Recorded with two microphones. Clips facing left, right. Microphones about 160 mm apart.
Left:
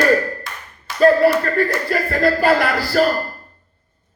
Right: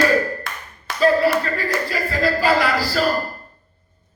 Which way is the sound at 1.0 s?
55° left (ahead or behind).